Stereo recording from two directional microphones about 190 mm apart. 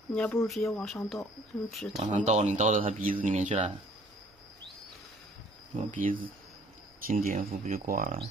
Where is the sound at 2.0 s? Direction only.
35° right (ahead or behind).